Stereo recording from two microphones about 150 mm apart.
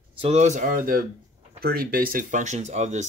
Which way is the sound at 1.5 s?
90° right.